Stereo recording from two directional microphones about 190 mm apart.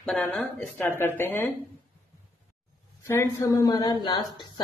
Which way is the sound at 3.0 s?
15° left (ahead or behind).